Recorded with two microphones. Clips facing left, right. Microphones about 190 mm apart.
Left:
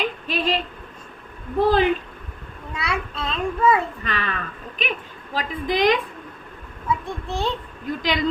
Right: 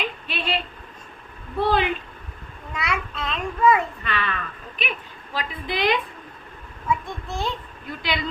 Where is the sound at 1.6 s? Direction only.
40° left (ahead or behind).